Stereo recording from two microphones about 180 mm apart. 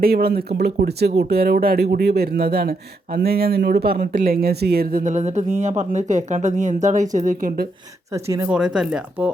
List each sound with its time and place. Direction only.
0.0 s speech: 60° right (ahead or behind)
8.1 s speech: 20° right (ahead or behind)
8.4 s speech: 5° right (ahead or behind)